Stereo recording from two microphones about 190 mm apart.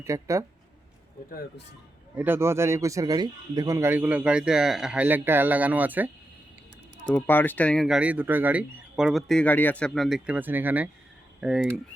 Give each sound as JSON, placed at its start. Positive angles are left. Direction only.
{"t": 0.0, "sound": "speech", "side_deg": -15}
{"t": 2.1, "sound": "speech", "side_deg": -10}
{"t": 7.1, "sound": "speech", "side_deg": 10}